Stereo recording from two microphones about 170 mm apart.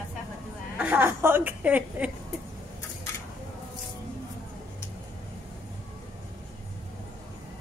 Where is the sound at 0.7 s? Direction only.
10° right (ahead or behind).